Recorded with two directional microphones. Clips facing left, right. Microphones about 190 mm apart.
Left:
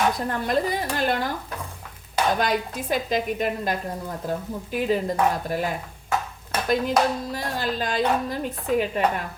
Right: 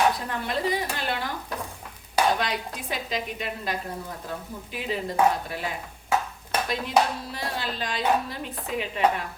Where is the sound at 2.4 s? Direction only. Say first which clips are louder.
Left 6 dB; 45° left (ahead or behind).